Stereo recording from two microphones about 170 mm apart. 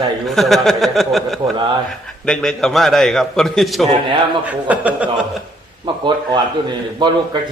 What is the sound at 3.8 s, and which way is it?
Speech, 35° right (ahead or behind).